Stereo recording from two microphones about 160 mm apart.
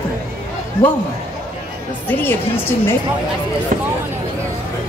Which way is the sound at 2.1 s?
15° left (ahead or behind).